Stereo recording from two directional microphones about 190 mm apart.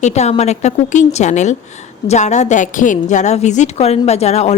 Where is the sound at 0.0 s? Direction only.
35° left (ahead or behind).